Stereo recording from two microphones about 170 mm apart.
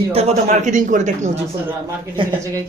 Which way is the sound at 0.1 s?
35° right (ahead or behind).